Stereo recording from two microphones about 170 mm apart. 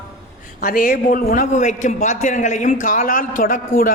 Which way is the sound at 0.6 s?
60° left (ahead or behind).